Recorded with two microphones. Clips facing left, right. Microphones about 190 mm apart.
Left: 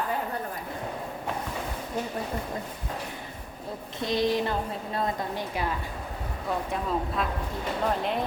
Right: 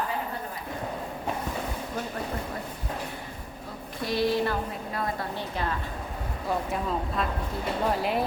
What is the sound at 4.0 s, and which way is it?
A woman's voice, 20° left (ahead or behind).